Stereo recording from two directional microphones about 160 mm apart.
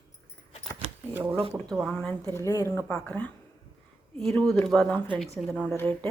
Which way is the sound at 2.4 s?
20° left (ahead or behind).